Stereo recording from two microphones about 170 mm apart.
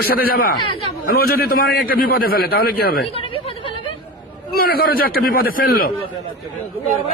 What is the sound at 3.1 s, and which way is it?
Chatter, 35° left (ahead or behind).